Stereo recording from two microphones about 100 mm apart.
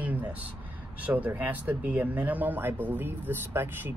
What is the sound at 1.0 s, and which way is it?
Speech, 15° right (ahead or behind).